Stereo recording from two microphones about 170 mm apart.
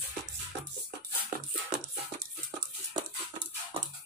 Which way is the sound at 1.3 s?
50° right (ahead or behind).